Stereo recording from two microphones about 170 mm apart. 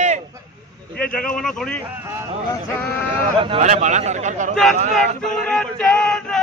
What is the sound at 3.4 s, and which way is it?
A man's voice, 35° right (ahead or behind).